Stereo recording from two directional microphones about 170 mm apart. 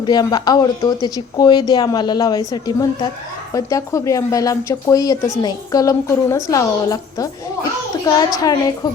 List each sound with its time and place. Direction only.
0.0 s a child's voice: 25° left (ahead or behind)